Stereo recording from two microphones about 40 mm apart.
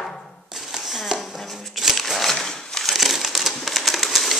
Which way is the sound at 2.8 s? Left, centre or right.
Centre.